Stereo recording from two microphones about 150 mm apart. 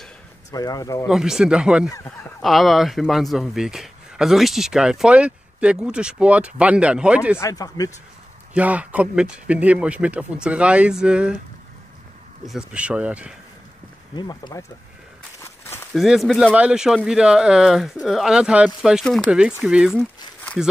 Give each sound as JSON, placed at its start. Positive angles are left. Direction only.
{"t": 0.5, "sound": "speech", "side_deg": 25}
{"t": 1.0, "sound": "a man's voice", "side_deg": -5}
{"t": 7.3, "sound": "speech", "side_deg": 20}
{"t": 8.5, "sound": "speech", "side_deg": -10}
{"t": 12.4, "sound": "speech", "side_deg": -5}
{"t": 14.1, "sound": "speech", "side_deg": 30}
{"t": 15.4, "sound": "walk", "side_deg": 15}
{"t": 15.9, "sound": "a man's voice", "side_deg": 0}